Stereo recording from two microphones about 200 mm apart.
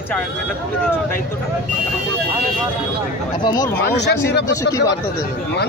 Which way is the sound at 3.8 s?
55° left (ahead or behind).